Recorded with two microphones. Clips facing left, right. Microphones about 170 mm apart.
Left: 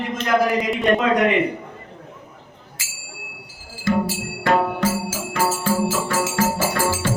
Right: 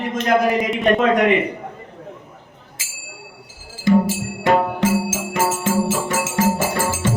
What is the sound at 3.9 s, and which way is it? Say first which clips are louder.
Music: right 5 dB; 20° right (ahead or behind).